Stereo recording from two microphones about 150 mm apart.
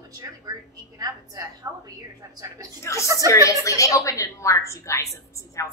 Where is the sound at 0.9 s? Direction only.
25° right (ahead or behind).